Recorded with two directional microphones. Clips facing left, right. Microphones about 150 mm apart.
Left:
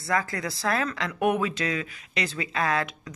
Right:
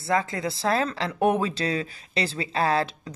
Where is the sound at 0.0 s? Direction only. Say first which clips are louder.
Right 3 dB; 25° right (ahead or behind).